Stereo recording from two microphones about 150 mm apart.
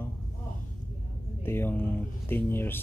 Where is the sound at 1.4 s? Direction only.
15° left (ahead or behind).